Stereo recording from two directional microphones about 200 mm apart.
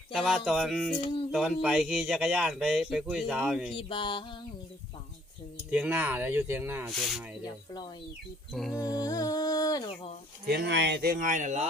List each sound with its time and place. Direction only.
0.1 s a sound: centre (ahead or behind)
3.8 s music: 25° left (ahead or behind)
5.7 s speech: 5° right (ahead or behind)
6.9 s a sound: centre (ahead or behind)
7.4 s music: 20° left (ahead or behind)
10.4 s speech: 55° right (ahead or behind); by 11.6 s 35° right (ahead or behind)